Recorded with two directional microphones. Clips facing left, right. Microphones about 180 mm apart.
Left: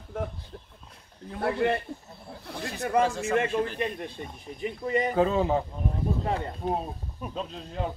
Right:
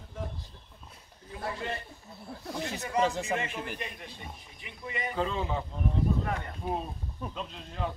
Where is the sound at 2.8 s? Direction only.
55° left (ahead or behind).